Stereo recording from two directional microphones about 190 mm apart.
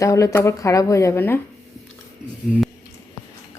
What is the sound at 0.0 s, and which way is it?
A woman's voice, 15° left (ahead or behind).